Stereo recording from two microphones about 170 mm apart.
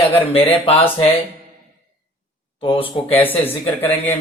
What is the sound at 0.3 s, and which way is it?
Speech, 35° left (ahead or behind).